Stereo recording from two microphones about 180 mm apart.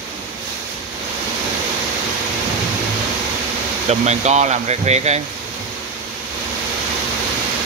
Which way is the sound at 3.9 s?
40° right (ahead or behind).